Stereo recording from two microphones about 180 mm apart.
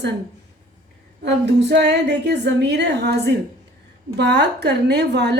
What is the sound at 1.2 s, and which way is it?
A woman's voice, 70° right (ahead or behind).